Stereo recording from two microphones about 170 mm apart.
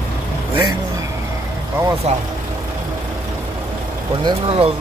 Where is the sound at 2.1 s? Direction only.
40° right (ahead or behind).